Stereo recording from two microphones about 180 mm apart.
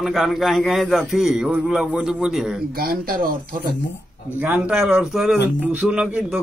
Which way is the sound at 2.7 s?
55° right (ahead or behind).